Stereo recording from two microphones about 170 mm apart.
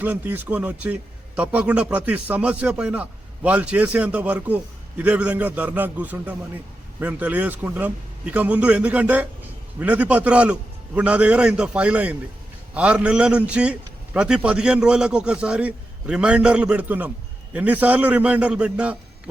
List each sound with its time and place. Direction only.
0.0 s a man's voice: 10° right (ahead or behind)